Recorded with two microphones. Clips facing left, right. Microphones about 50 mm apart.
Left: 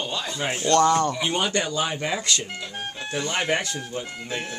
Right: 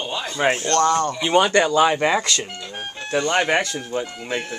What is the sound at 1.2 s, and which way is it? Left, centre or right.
Speech, right.